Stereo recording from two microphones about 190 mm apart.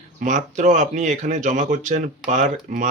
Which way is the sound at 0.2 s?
40° right (ahead or behind).